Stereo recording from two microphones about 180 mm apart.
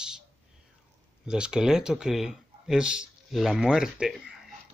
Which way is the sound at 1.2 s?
5° right (ahead or behind).